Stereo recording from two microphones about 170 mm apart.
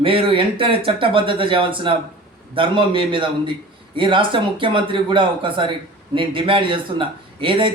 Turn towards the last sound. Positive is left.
turn(degrees=-30)  # may be behind; listen again after turning